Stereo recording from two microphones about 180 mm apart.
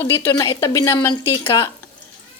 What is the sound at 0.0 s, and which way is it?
A woman's voice, 15° left (ahead or behind).